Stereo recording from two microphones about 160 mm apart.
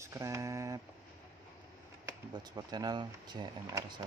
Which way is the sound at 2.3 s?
25° right (ahead or behind).